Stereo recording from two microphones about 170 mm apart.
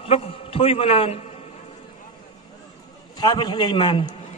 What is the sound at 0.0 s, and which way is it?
A man's voice, 35° left (ahead or behind).